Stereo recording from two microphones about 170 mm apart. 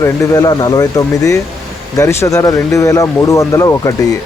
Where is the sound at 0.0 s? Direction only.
20° left (ahead or behind).